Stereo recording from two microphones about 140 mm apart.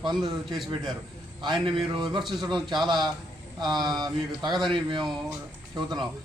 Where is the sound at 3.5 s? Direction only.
30° right (ahead or behind).